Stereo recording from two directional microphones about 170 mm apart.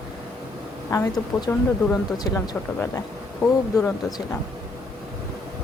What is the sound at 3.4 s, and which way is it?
Speech, 15° left (ahead or behind).